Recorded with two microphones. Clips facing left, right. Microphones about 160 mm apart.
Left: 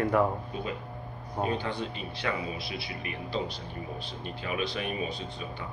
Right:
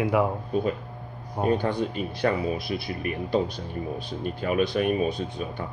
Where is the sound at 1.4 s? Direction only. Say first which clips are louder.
Right 7 dB; 50° right (ahead or behind).